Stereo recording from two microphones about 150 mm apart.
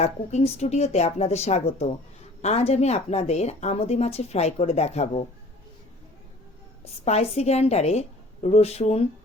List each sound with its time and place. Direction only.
0.0 s a woman's voice: 45° left (ahead or behind)
6.8 s a woman's voice: 45° left (ahead or behind)